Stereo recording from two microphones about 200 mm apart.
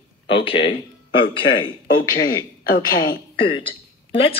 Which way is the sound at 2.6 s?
45° left (ahead or behind).